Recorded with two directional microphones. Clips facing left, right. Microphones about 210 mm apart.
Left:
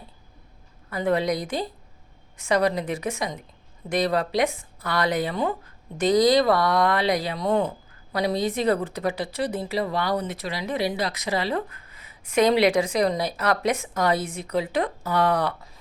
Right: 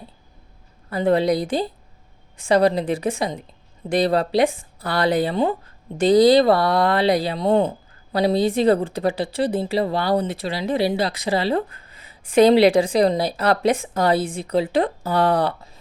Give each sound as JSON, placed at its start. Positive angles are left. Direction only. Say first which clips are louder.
{"t": 0.9, "sound": "speech", "louder": "right 5 dB", "side_deg": -30}